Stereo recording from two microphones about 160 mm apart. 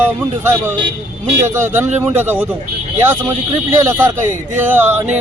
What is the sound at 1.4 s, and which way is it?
Speech, 15° right (ahead or behind).